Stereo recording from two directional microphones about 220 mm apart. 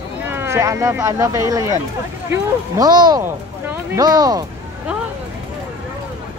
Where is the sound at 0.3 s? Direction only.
10° right (ahead or behind).